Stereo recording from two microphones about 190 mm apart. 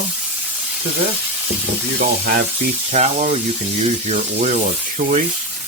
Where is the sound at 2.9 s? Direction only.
40° right (ahead or behind).